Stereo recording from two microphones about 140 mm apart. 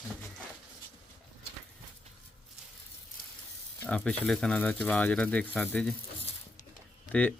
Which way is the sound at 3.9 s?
10° left (ahead or behind).